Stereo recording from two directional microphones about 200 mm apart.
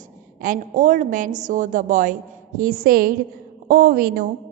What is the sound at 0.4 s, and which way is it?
A woman's voice, 40° right (ahead or behind).